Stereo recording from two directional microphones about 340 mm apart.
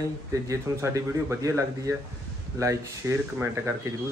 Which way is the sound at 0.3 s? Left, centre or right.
Centre.